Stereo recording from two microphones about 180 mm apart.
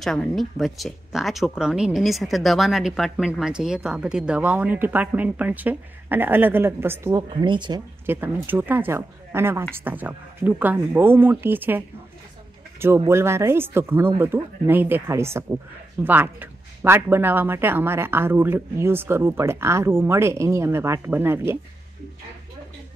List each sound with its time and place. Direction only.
0.0 s speech: centre (ahead or behind); by 7.8 s 25° right (ahead or behind)
8.1 s speech: 10° right (ahead or behind)
13.0 s speech: 15° right (ahead or behind)